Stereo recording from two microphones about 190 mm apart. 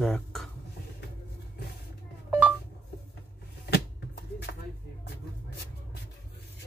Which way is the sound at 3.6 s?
60° left (ahead or behind).